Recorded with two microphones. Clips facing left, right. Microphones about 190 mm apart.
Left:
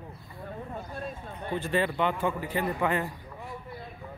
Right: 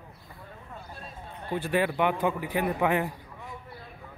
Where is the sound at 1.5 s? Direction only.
10° right (ahead or behind).